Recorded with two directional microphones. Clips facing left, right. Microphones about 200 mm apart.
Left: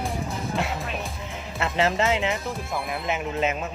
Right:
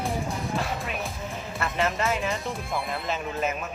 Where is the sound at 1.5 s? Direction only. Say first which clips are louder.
Left 4 dB; 25° left (ahead or behind).